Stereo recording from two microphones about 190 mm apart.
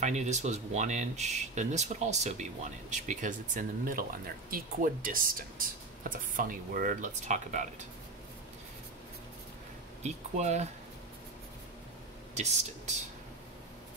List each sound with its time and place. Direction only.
0.0 s speech: 40° right (ahead or behind)
10.0 s speech: 35° right (ahead or behind)
12.4 s speech: 35° right (ahead or behind)